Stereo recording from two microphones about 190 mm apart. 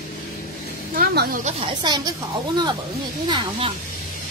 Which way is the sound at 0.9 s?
55° right (ahead or behind).